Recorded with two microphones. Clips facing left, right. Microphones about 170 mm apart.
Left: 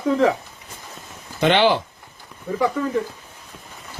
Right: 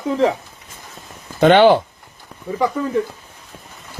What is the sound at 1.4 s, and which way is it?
Speech, 50° right (ahead or behind).